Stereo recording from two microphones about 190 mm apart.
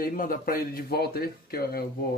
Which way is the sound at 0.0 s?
45° left (ahead or behind).